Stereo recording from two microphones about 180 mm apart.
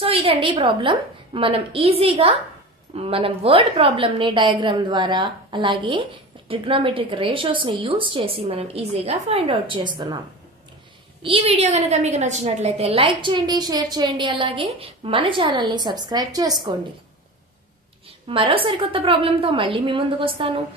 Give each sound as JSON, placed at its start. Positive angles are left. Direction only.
{"t": 0.0, "sound": "a woman's voice", "side_deg": -30}
{"t": 11.2, "sound": "a woman's voice", "side_deg": -35}
{"t": 18.3, "sound": "a woman's voice", "side_deg": -30}